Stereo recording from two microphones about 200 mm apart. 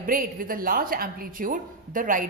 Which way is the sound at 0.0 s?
45° right (ahead or behind).